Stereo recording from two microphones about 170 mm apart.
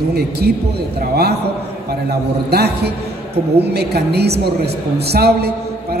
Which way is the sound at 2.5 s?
70° right (ahead or behind).